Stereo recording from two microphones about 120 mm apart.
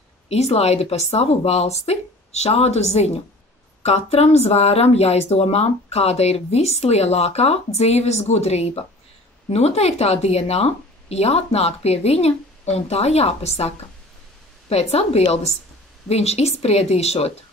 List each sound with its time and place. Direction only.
0.3 s speech: 60° left (ahead or behind)